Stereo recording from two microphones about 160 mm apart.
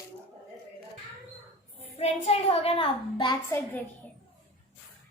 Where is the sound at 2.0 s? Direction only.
40° left (ahead or behind).